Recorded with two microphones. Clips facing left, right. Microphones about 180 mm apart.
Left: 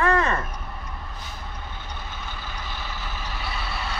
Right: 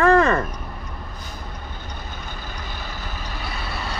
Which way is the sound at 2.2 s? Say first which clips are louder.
Right 1 dB; 40° right (ahead or behind).